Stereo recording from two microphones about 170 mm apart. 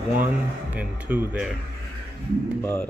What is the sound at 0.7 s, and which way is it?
Speech, 10° right (ahead or behind).